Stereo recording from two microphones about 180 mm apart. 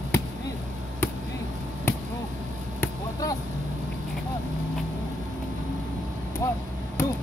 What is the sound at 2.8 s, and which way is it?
Basketball bounce, 20° left (ahead or behind).